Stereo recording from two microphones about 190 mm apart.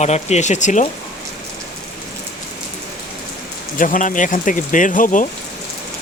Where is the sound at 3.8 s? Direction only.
45° left (ahead or behind).